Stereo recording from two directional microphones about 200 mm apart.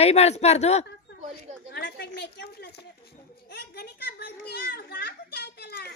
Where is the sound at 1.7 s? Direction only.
55° left (ahead or behind).